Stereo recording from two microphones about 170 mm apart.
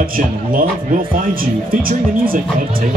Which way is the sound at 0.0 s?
55° right (ahead or behind).